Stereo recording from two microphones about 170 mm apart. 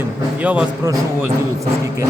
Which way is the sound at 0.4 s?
10° right (ahead or behind).